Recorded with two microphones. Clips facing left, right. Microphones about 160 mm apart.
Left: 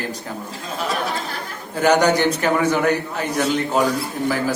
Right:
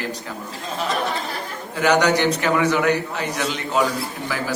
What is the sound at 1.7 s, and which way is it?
A man's voice, 45° left (ahead or behind).